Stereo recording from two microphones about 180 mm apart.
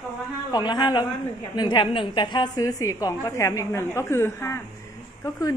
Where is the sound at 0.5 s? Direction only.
25° left (ahead or behind).